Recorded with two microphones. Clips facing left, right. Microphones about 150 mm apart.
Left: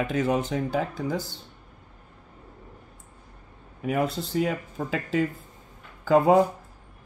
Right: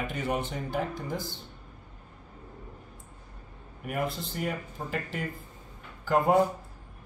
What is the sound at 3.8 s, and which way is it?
Speech, 90° left.